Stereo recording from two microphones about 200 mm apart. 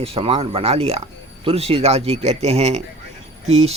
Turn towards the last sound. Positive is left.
turn(degrees=-30)  # may be behind; listen again after turning